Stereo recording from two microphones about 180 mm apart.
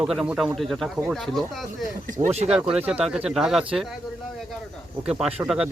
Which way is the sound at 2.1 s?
40° right (ahead or behind).